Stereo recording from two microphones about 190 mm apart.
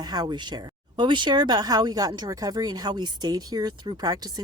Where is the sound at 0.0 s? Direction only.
20° right (ahead or behind).